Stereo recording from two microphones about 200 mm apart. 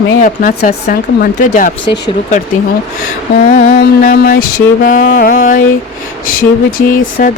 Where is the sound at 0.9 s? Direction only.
50° left (ahead or behind).